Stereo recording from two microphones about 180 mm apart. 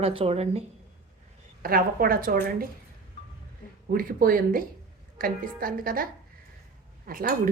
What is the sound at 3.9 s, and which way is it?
A woman's voice, 50° right (ahead or behind).